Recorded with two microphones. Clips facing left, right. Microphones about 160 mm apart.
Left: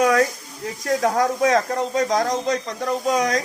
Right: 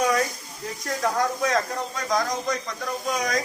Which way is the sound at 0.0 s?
60° left (ahead or behind).